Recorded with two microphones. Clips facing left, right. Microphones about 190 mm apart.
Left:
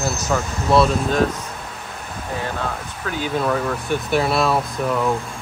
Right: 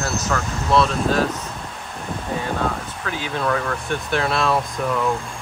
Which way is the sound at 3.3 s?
5° left (ahead or behind).